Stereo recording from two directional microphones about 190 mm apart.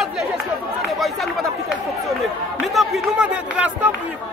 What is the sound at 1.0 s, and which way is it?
Speech, centre (ahead or behind).